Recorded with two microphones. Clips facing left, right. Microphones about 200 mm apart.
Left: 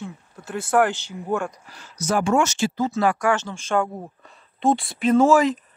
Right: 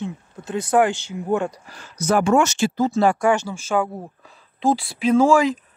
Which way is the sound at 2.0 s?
60° right (ahead or behind).